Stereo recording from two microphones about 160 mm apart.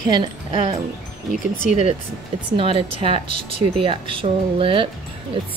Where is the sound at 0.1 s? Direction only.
30° right (ahead or behind).